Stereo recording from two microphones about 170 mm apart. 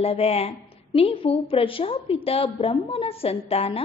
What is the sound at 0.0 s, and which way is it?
A woman's voice, 35° left (ahead or behind).